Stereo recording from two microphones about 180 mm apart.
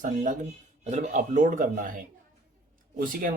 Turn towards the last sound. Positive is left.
turn(degrees=-50)  # may be behind; listen again after turning